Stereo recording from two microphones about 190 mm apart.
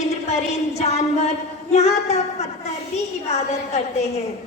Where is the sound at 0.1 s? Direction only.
35° left (ahead or behind).